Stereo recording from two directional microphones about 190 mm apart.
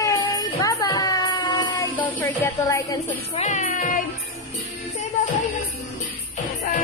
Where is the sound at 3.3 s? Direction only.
40° left (ahead or behind).